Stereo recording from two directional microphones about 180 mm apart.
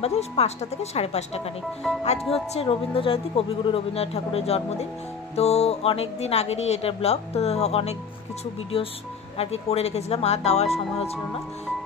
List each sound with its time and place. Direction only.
0.0 s a woman's voice: 35° left (ahead or behind)